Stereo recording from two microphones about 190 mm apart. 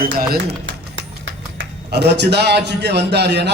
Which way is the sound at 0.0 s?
50° right (ahead or behind).